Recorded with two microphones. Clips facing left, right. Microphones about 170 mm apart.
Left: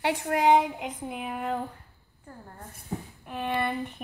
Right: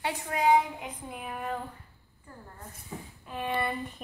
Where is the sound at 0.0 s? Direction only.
70° left (ahead or behind).